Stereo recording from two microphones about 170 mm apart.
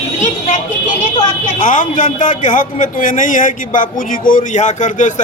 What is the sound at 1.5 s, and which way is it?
A man's voice, 50° left (ahead or behind).